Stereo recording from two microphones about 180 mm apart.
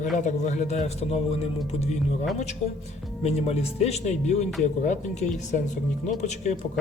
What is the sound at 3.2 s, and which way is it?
Speech, 35° left (ahead or behind).